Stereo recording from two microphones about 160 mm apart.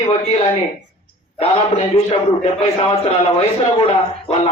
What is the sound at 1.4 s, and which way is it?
Speech, 40° left (ahead or behind).